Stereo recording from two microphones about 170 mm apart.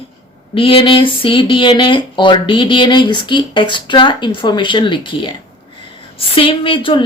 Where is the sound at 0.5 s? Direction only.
30° left (ahead or behind).